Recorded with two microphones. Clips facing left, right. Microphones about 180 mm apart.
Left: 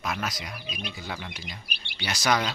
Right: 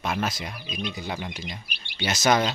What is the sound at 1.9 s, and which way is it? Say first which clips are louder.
Speech: right 4 dB; 25° right (ahead or behind).